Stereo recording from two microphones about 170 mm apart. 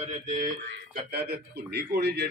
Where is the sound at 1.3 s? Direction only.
75° right (ahead or behind).